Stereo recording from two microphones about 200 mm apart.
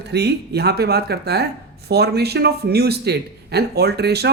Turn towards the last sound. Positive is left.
turn(degrees=-55)  # may be behind; listen again after turning